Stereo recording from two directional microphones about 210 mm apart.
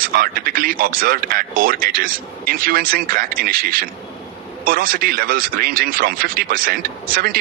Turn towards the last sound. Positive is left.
turn(degrees=-45)  # may be behind; listen again after turning